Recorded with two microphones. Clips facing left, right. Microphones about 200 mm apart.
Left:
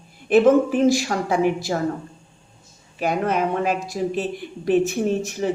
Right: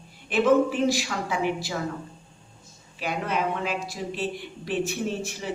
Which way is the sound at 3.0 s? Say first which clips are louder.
Left 6 dB; 45° left (ahead or behind).